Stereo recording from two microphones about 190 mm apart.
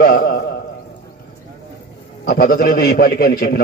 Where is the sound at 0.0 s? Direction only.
55° left (ahead or behind).